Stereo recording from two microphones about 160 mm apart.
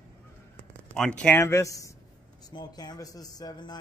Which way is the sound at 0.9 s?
5° left (ahead or behind).